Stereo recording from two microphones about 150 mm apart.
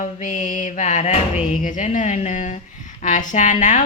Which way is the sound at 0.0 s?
55° left (ahead or behind).